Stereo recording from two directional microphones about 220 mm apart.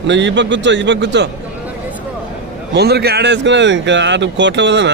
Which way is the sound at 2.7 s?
50° right (ahead or behind).